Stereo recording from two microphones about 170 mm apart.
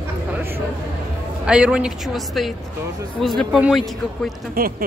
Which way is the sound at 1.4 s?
5° right (ahead or behind).